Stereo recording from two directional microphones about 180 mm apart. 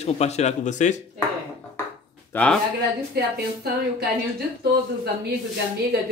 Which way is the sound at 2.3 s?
5° left (ahead or behind).